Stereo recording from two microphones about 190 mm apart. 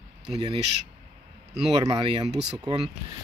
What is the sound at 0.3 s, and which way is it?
Speech, 25° right (ahead or behind).